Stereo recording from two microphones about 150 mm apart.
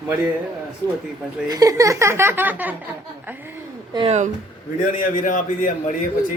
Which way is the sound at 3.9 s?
40° right (ahead or behind).